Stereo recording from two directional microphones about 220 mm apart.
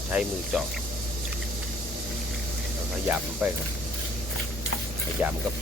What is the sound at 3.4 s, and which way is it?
Speech, 5° right (ahead or behind).